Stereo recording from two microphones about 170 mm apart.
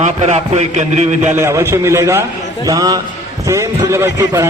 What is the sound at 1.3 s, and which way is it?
A man's voice, 15° right (ahead or behind).